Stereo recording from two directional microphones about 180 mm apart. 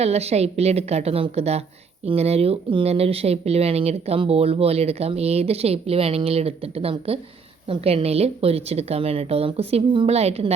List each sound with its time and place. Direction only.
0.0 s speech: 35° right (ahead or behind)